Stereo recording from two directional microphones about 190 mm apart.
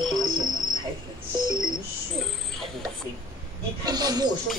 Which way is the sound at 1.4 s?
25° right (ahead or behind).